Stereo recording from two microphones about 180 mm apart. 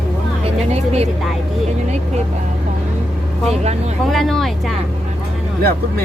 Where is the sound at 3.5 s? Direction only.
35° right (ahead or behind).